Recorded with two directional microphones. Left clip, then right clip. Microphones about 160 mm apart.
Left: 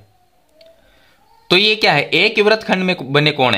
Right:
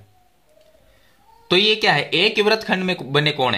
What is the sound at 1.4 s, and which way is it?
Speech, 30° left (ahead or behind).